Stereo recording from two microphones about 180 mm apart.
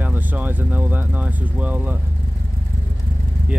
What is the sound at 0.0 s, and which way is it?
Speech, 10° right (ahead or behind).